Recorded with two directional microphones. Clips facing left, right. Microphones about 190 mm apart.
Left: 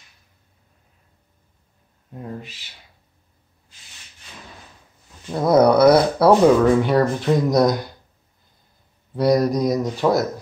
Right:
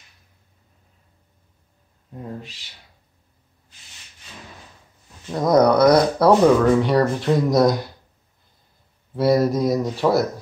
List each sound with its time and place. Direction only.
2.1 s speech: centre (ahead or behind)
5.3 s speech: 5° left (ahead or behind)
9.1 s speech: centre (ahead or behind)